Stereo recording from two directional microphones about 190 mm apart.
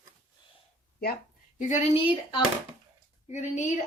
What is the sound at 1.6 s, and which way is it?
Speech, 40° left (ahead or behind).